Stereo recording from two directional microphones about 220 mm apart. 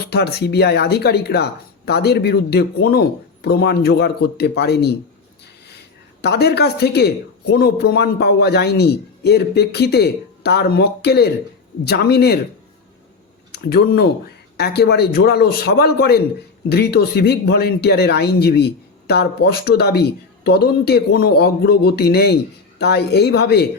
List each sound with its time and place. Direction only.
0.0 s speech: 45° left (ahead or behind)
6.2 s speech: 50° left (ahead or behind)
13.5 s speech: 45° left (ahead or behind)